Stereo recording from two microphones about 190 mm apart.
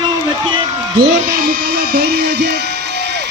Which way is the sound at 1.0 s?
50° right (ahead or behind).